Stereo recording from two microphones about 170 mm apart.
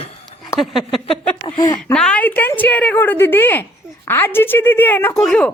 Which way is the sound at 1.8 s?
5° left (ahead or behind).